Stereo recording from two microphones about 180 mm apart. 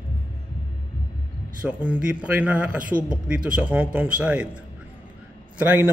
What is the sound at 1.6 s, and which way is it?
A man's voice, 5° right (ahead or behind).